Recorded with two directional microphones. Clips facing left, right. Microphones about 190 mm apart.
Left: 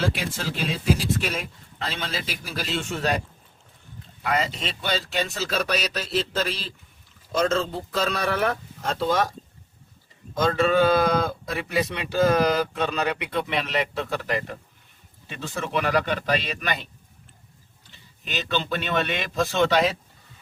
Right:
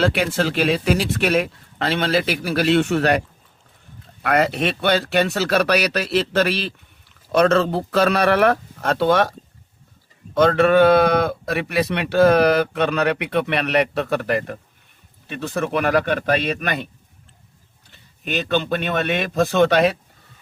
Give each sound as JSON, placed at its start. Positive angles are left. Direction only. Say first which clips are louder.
{"t": 0.0, "sound": "a man's voice", "louder": "right 8 dB", "side_deg": -65}
{"t": 10.3, "sound": "speech", "louder": "right 6 dB", "side_deg": -65}
{"t": 17.9, "sound": "speech", "louder": "right 7 dB", "side_deg": -55}